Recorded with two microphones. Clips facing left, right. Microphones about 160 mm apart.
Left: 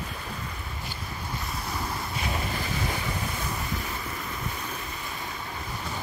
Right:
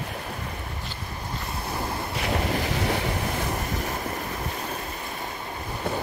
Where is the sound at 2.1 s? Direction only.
75° right (ahead or behind).